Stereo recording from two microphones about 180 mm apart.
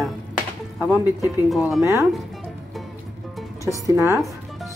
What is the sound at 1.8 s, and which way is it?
Speech, 15° right (ahead or behind).